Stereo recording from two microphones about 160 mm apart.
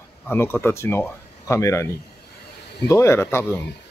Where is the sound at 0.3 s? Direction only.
15° left (ahead or behind).